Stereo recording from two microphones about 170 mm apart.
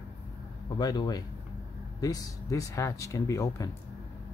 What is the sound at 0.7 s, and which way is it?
Speech, 25° left (ahead or behind).